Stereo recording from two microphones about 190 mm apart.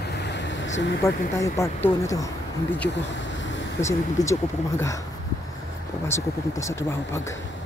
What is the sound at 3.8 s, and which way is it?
Speech, 15° left (ahead or behind).